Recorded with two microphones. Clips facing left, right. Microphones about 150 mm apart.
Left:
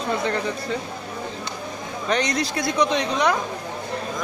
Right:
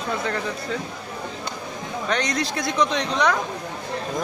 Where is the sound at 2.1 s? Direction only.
Centre (ahead or behind).